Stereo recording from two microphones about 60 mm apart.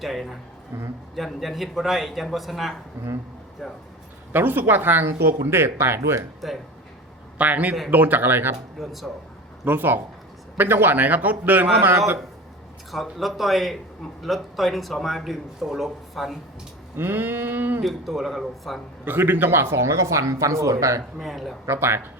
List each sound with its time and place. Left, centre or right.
0.0 s a man's voice: centre
4.3 s a man's voice: right
6.4 s a man's voice: centre
7.3 s a man's voice: right
8.8 s a man's voice: centre
9.6 s a man's voice: right
11.9 s speech: right
12.9 s a man's voice: centre
17.0 s a man's voice: right
17.8 s a man's voice: centre
19.0 s speech: right
21.2 s a man's voice: centre
21.7 s speech: right